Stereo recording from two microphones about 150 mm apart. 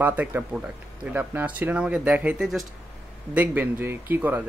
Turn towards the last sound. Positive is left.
turn(degrees=-15)  # may be behind; listen again after turning